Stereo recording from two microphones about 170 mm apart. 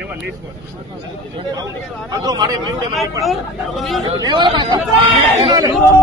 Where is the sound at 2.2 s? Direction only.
25° right (ahead or behind).